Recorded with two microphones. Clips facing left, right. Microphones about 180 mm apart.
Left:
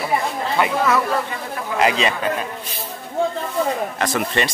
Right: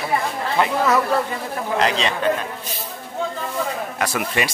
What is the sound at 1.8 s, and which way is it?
Speech, 5° left (ahead or behind).